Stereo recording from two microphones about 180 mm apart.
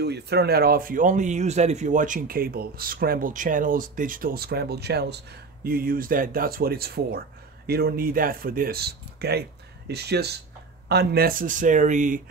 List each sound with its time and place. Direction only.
0.0 s speech: 65° right (ahead or behind); by 12.2 s 45° right (ahead or behind)